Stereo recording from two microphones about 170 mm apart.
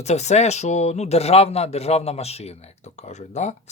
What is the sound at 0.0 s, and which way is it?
Speech, 40° left (ahead or behind).